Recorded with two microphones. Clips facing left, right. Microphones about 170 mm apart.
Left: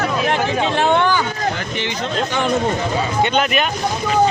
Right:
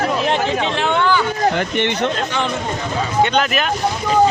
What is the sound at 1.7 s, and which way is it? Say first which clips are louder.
Speech: right 5 dB; 60° right (ahead or behind).